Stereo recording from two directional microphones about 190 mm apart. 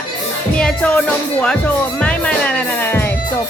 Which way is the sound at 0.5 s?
5° left (ahead or behind).